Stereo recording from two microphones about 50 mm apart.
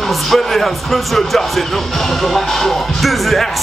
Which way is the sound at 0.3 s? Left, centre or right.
Centre.